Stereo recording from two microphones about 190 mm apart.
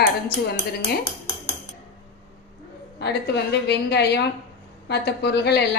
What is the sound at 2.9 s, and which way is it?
A woman's voice, 60° left (ahead or behind).